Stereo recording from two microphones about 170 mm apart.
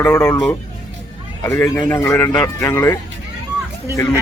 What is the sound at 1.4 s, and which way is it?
Speech, 15° left (ahead or behind).